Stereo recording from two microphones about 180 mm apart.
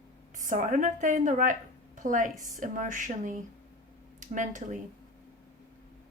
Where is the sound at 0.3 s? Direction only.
45° right (ahead or behind).